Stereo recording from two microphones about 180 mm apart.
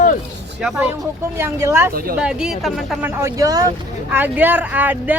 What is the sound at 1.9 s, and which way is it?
Speech, 55° right (ahead or behind).